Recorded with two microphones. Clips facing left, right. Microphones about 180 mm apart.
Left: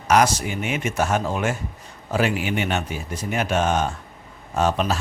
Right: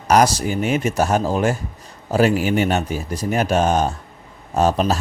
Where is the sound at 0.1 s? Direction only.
35° right (ahead or behind).